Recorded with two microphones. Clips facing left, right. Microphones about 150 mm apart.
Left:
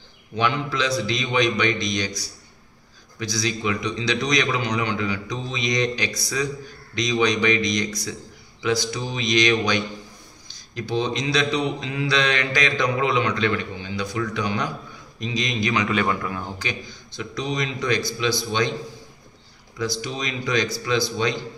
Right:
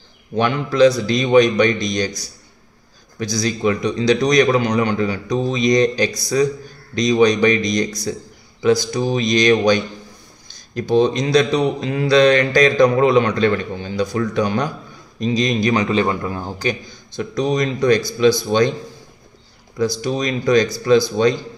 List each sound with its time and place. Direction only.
0.4 s speech: 45° right (ahead or behind)
3.2 s a man's voice: 45° right (ahead or behind)
10.5 s a man's voice: 50° right (ahead or behind)
20.0 s speech: 45° right (ahead or behind)